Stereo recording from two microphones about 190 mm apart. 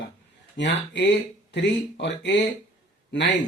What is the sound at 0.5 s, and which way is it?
Speech, 70° left (ahead or behind).